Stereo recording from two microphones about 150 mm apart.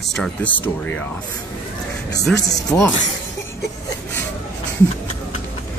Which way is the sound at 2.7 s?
15° left (ahead or behind).